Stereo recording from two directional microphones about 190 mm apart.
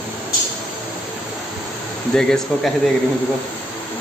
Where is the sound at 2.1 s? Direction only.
5° left (ahead or behind).